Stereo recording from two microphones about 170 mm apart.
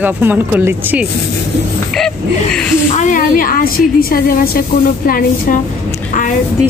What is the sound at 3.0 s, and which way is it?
A woman's voice, 50° left (ahead or behind).